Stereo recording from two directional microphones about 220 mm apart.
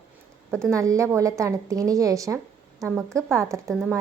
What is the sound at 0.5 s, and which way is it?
A woman's voice, 15° right (ahead or behind).